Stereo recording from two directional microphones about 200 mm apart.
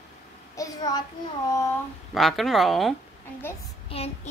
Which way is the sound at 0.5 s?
15° left (ahead or behind).